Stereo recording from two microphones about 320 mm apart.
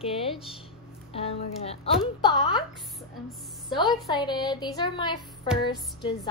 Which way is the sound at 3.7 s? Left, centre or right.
Centre.